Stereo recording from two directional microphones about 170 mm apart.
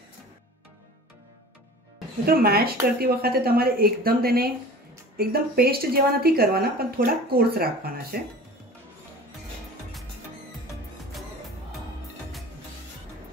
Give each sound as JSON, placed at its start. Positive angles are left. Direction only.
{"t": 2.2, "sound": "a woman's voice", "side_deg": -65}